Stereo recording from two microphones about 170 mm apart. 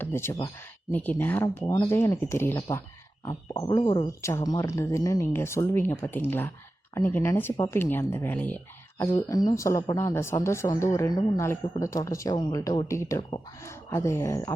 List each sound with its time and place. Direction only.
0.0 s speech: 15° left (ahead or behind)
4.2 s speech: 15° left (ahead or behind)
9.0 s speech: 20° left (ahead or behind)